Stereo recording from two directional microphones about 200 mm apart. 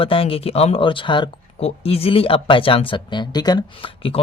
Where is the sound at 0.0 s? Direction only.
25° left (ahead or behind).